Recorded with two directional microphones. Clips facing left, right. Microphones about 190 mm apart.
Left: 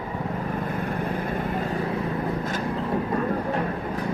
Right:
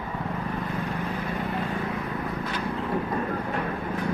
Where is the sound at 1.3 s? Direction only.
40° left (ahead or behind).